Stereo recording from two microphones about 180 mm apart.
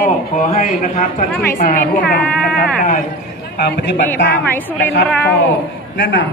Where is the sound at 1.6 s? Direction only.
50° left (ahead or behind).